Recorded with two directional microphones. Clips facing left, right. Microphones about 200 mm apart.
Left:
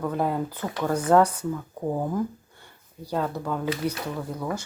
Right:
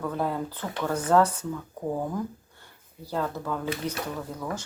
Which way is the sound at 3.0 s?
15° left (ahead or behind).